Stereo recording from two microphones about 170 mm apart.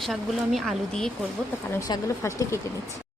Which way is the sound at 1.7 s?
20° left (ahead or behind).